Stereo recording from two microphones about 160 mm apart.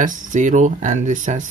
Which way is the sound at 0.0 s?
50° right (ahead or behind).